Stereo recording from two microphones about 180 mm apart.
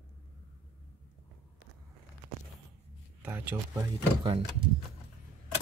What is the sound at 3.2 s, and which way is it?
Speech, 10° right (ahead or behind).